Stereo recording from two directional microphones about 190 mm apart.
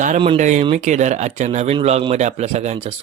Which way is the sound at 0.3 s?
40° right (ahead or behind).